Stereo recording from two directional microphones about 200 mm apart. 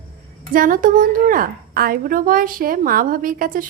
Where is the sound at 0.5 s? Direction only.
45° right (ahead or behind).